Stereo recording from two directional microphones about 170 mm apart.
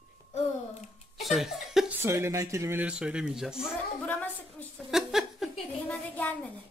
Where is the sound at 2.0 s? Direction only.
15° right (ahead or behind).